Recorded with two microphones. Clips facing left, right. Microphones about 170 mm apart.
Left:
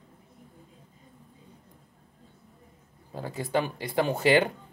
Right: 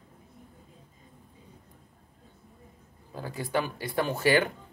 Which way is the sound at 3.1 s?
25° left (ahead or behind).